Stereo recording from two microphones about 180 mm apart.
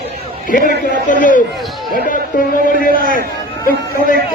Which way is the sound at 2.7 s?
50° left (ahead or behind).